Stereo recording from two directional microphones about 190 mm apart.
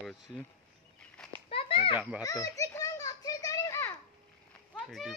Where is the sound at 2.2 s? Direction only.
20° left (ahead or behind).